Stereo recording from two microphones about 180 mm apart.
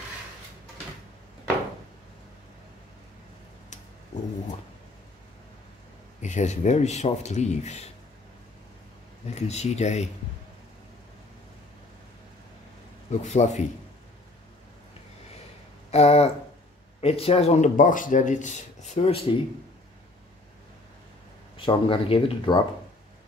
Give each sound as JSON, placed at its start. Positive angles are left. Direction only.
{"t": 6.2, "sound": "speech", "side_deg": 40}
{"t": 9.3, "sound": "speech", "side_deg": 40}
{"t": 13.2, "sound": "speech", "side_deg": 40}
{"t": 15.9, "sound": "speech", "side_deg": 35}
{"t": 21.5, "sound": "speech", "side_deg": 30}